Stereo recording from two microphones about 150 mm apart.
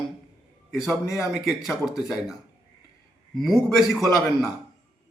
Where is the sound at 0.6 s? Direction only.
Centre (ahead or behind).